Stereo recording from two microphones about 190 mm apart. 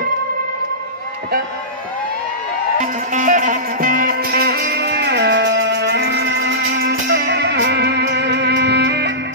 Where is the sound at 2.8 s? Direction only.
40° right (ahead or behind); by 9.1 s 60° right (ahead or behind).